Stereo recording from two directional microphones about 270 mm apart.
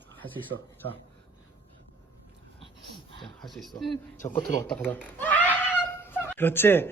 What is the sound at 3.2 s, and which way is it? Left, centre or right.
Speech, centre.